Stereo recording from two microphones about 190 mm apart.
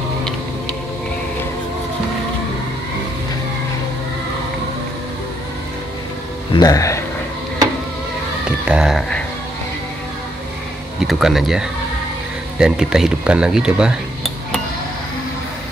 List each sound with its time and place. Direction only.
6.5 s speech: 20° left (ahead or behind)
8.5 s speech: 5° right (ahead or behind)
11.0 s speech: centre (ahead or behind)